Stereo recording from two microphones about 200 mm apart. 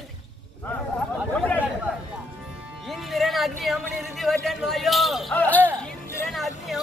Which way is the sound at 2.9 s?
Centre (ahead or behind).